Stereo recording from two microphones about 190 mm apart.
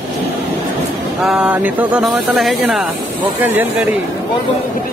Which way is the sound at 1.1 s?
5° right (ahead or behind).